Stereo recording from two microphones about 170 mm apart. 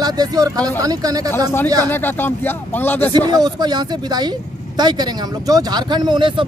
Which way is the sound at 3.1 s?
25° right (ahead or behind).